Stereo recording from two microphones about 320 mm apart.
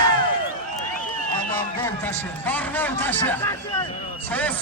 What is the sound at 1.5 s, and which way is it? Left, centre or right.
A man's voice, centre.